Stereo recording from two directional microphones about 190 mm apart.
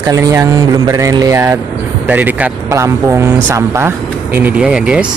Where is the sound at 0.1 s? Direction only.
15° right (ahead or behind).